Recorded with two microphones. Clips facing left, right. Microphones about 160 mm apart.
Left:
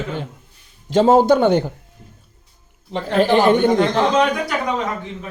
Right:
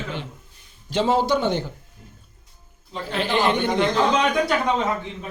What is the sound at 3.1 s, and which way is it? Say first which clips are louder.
Speech: left 8 dB; 45° left (ahead or behind).